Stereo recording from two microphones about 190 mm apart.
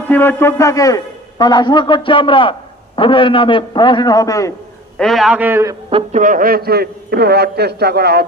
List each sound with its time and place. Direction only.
0.1 s a man's voice: 10° left (ahead or behind)
4.9 s a man's voice: centre (ahead or behind)
5.9 s a man's voice: 40° right (ahead or behind); by 8.3 s 55° right (ahead or behind)